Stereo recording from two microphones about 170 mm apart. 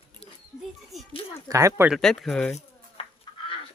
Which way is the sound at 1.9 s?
Centre (ahead or behind).